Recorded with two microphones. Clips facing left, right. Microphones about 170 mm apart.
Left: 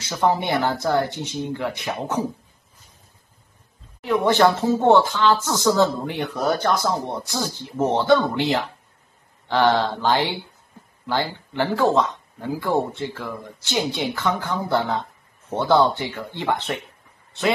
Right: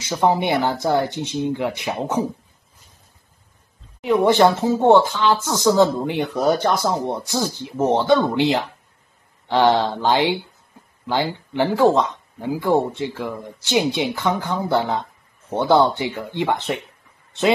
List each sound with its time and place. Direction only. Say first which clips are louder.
0.0 s speech: right 2 dB; 15° right (ahead or behind)
4.0 s speech: right 3 dB; 15° right (ahead or behind)